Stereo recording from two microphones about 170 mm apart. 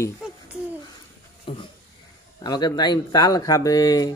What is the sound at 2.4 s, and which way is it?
Speech, 25° left (ahead or behind).